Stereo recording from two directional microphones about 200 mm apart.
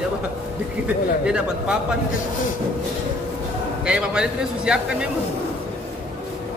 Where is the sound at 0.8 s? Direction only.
5° right (ahead or behind).